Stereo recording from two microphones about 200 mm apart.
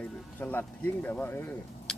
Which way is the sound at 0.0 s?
5° left (ahead or behind).